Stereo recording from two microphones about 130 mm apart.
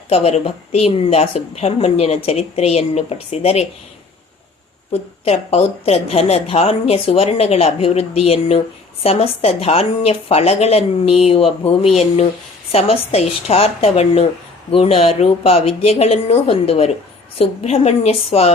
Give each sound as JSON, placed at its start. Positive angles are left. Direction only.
{"t": 0.1, "sound": "a woman's voice", "side_deg": 50}
{"t": 4.9, "sound": "a woman's voice", "side_deg": 55}